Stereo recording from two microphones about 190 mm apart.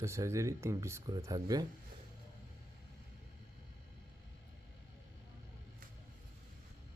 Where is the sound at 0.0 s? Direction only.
15° right (ahead or behind).